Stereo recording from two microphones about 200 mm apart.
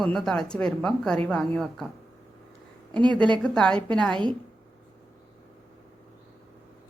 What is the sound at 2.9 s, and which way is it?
Speech, 20° right (ahead or behind).